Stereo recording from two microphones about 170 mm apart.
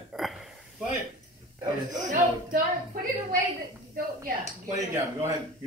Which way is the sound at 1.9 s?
50° right (ahead or behind).